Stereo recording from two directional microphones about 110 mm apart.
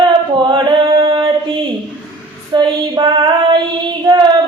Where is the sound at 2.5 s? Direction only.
40° right (ahead or behind).